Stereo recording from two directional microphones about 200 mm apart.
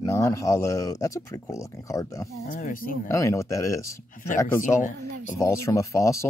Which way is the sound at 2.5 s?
45° left (ahead or behind).